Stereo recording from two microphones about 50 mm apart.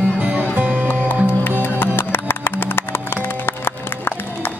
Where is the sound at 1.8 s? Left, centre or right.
Left.